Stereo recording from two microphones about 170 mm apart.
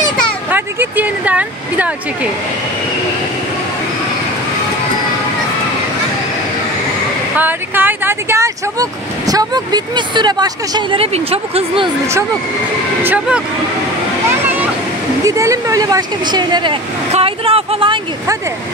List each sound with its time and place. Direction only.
0.5 s speech: 10° right (ahead or behind)
7.3 s speech: 10° right (ahead or behind); by 11.9 s 30° right (ahead or behind)
13.0 s speech: 10° right (ahead or behind)
15.2 s speech: 20° right (ahead or behind)
17.1 s a sound: 35° right (ahead or behind)